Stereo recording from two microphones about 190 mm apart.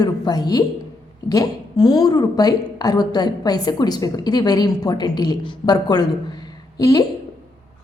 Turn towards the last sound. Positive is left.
turn(degrees=20)  # may be behind; listen again after turning